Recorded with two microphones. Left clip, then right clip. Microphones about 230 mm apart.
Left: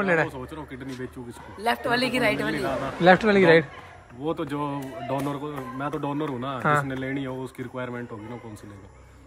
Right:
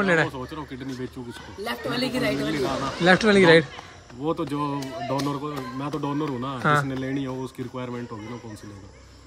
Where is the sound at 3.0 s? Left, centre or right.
Centre.